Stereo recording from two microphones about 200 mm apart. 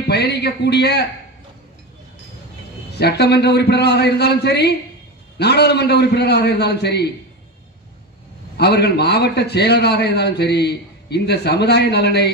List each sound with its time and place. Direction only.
0.0 s a man's voice: 55° left (ahead or behind)
2.9 s a man's voice: 55° left (ahead or behind)
8.5 s a man's voice: 55° left (ahead or behind)